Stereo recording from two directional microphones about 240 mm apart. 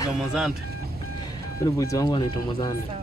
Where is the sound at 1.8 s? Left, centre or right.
Centre.